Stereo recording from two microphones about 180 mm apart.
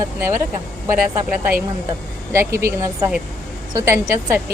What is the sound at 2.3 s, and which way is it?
A woman's voice, 15° right (ahead or behind).